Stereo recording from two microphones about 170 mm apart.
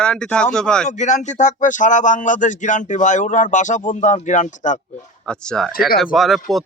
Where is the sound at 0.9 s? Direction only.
45° left (ahead or behind).